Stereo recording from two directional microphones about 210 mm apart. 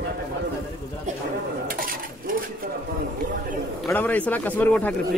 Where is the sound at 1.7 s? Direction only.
40° right (ahead or behind).